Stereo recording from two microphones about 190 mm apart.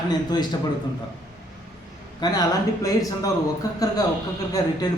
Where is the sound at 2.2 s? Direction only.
20° left (ahead or behind).